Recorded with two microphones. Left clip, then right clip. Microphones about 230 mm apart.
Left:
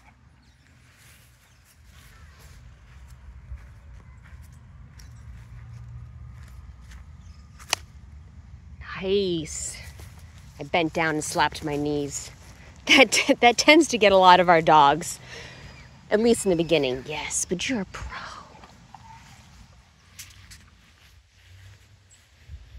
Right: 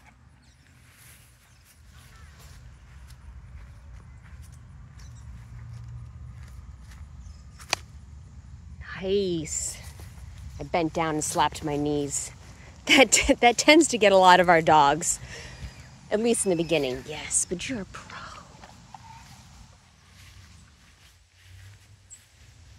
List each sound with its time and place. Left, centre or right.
7.6 s whip: centre
8.7 s a sound: centre
10.6 s speech: centre; by 18.4 s left